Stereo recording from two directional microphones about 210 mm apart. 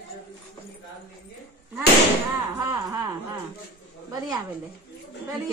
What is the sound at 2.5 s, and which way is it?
Speech, 15° right (ahead or behind).